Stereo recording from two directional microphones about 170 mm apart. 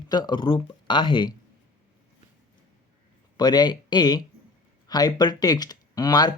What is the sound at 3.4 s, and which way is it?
Speech, 25° left (ahead or behind).